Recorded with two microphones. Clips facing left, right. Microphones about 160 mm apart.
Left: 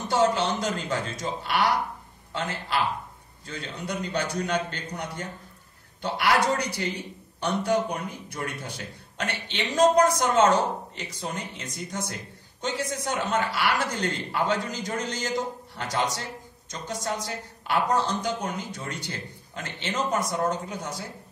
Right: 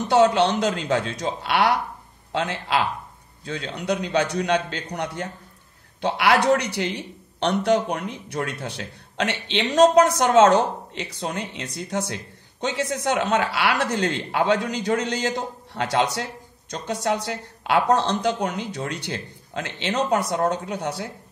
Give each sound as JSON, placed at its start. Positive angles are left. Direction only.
{"t": 0.1, "sound": "a man's voice", "side_deg": -70}